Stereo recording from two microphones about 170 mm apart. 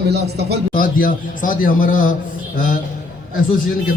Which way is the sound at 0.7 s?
55° left (ahead or behind).